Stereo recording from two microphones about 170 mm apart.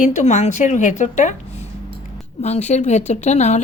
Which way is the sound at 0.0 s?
45° left (ahead or behind).